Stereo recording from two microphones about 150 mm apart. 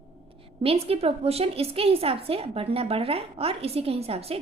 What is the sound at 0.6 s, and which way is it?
A woman's voice, 40° right (ahead or behind).